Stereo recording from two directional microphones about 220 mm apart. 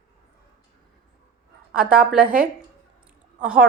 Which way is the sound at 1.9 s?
5° right (ahead or behind).